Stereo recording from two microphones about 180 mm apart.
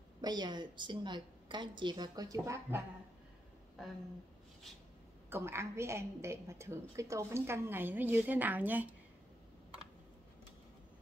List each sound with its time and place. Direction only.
0.2 s a woman's voice: 25° right (ahead or behind)
5.3 s a woman's voice: 15° right (ahead or behind)